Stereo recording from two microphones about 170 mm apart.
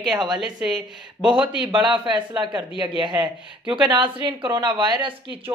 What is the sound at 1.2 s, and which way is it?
Speech, 30° right (ahead or behind).